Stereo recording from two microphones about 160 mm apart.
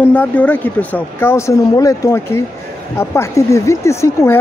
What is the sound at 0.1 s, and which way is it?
Speech, 10° left (ahead or behind).